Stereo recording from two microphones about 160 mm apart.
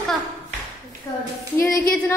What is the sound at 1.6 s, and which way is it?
Speech, 20° left (ahead or behind).